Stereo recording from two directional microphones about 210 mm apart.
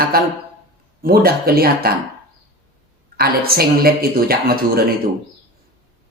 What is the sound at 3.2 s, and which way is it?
Speech, 45° right (ahead or behind).